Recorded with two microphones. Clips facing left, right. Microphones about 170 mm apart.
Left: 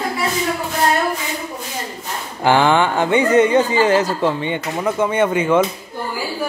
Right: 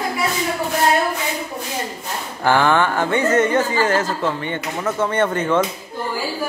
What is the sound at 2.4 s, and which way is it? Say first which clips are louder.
Speech: left 2 dB; 20° left (ahead or behind).